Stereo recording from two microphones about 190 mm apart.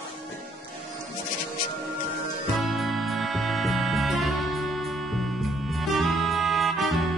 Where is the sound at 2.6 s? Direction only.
Centre (ahead or behind).